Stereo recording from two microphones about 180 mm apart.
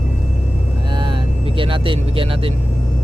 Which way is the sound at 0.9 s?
25° right (ahead or behind).